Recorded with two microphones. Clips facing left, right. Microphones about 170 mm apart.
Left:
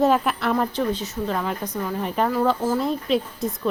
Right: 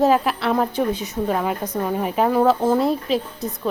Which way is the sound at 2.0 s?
10° right (ahead or behind).